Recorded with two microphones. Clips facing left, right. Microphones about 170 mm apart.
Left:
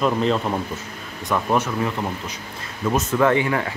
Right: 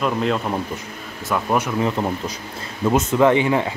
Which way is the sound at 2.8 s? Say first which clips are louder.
Right 3 dB; 15° right (ahead or behind).